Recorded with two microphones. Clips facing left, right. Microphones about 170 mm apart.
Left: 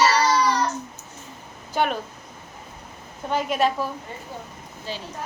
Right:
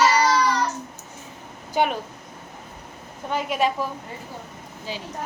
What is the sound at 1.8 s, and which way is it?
Speech, 15° right (ahead or behind).